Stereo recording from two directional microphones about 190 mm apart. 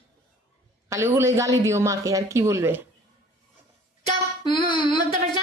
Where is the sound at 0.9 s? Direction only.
15° right (ahead or behind).